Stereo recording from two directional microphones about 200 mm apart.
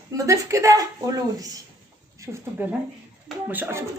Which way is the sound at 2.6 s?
10° right (ahead or behind).